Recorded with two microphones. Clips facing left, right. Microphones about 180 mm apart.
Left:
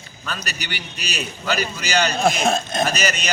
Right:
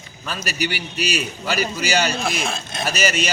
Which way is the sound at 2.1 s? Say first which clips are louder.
Left 6 dB; 45° left (ahead or behind).